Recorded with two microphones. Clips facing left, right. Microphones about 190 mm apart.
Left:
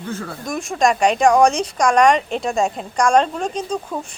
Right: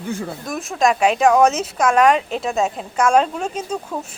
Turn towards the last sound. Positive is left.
turn(degrees=-5)  # may be behind; listen again after turning